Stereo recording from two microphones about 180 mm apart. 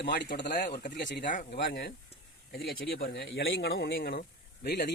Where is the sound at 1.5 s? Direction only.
70° left (ahead or behind).